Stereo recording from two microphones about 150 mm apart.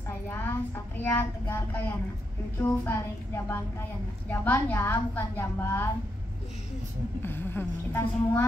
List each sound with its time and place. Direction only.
0.3 s a woman's voice: 15° left (ahead or behind)
7.2 s a woman's voice: 15° left (ahead or behind)